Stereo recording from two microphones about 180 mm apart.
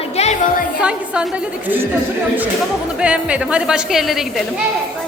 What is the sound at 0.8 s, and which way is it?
A woman's voice, 5° right (ahead or behind).